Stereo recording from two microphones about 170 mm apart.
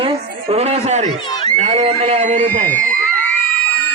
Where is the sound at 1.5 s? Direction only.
40° right (ahead or behind).